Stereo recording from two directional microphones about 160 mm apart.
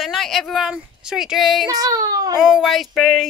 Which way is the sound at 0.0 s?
Centre (ahead or behind).